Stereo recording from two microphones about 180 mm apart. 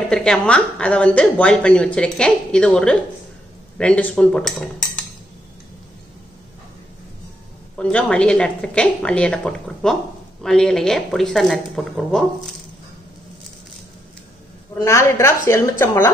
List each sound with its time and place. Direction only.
0.1 s a woman's voice: 5° left (ahead or behind)
7.7 s a woman's voice: 5° left (ahead or behind)
14.8 s a woman's voice: 15° left (ahead or behind)